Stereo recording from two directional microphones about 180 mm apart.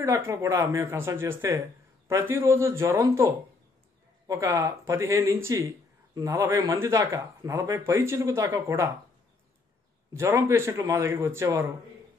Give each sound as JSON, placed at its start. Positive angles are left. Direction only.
{"t": 0.0, "sound": "speech", "side_deg": -15}
{"t": 4.3, "sound": "speech", "side_deg": -15}
{"t": 10.1, "sound": "speech", "side_deg": -15}